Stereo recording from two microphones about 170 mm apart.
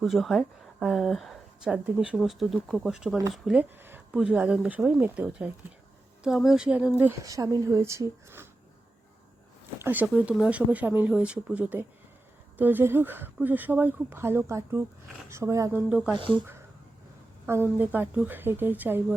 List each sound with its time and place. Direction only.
0.0 s speech: centre (ahead or behind)
9.7 s speech: 10° right (ahead or behind)
15.9 s speech: 5° right (ahead or behind)
17.4 s speech: 15° right (ahead or behind)